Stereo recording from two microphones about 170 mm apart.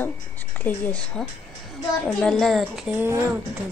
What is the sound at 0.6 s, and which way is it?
A woman's voice, 10° left (ahead or behind).